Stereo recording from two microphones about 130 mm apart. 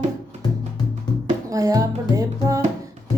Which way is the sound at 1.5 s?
25° right (ahead or behind).